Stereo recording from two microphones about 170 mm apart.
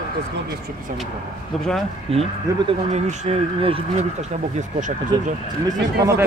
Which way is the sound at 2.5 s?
20° right (ahead or behind).